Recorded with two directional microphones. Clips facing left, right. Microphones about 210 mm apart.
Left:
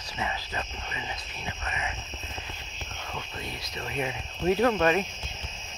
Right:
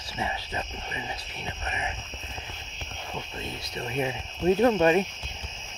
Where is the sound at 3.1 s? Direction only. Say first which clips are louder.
Right 2 dB; 25° right (ahead or behind).